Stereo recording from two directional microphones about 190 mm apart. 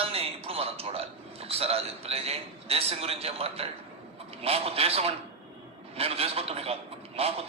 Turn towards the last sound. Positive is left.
turn(degrees=-30)  # may be behind; listen again after turning